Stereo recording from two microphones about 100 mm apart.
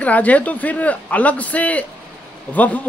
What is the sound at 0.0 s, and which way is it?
Speech, 15° left (ahead or behind).